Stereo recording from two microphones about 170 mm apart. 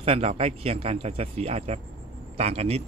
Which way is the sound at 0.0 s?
35° right (ahead or behind).